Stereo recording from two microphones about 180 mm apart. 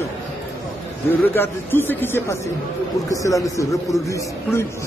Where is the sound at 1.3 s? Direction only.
10° left (ahead or behind).